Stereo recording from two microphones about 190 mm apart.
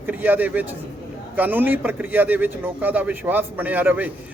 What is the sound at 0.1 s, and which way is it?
A man's voice, 10° right (ahead or behind).